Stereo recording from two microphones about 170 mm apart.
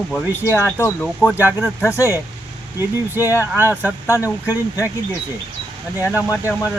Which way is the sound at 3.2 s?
15° left (ahead or behind).